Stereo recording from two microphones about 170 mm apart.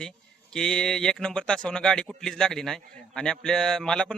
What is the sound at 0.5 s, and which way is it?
Speech, 5° left (ahead or behind).